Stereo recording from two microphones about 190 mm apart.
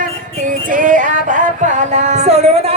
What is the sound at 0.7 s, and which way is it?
Music, 45° right (ahead or behind).